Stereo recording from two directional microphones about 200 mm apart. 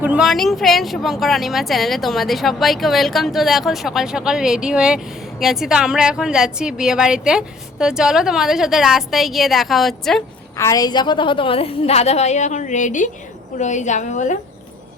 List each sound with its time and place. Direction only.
0.0 s a woman's voice: 5° right (ahead or behind)
10.6 s a woman's voice: 15° left (ahead or behind); by 14.3 s 35° left (ahead or behind)